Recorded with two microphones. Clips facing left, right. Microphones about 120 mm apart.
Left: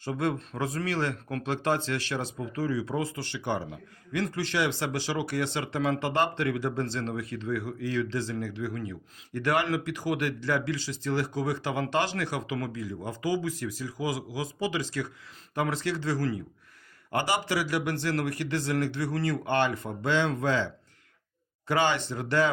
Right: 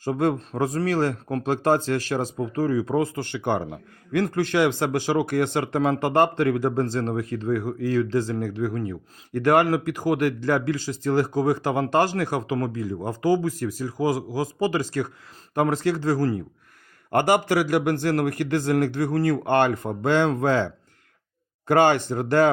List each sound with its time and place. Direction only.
0.0 s speech: 40° right (ahead or behind)